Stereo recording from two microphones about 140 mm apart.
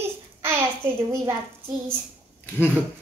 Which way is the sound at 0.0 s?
15° right (ahead or behind).